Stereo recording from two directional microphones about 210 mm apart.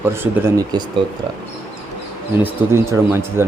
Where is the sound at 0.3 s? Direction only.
15° right (ahead or behind).